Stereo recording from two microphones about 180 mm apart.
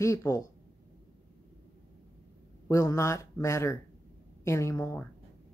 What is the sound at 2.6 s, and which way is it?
Speech, 15° left (ahead or behind).